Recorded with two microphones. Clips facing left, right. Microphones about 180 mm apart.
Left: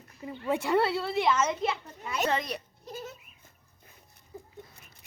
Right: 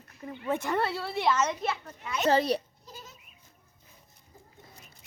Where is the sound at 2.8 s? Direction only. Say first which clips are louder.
Left 8 dB; 60° left (ahead or behind).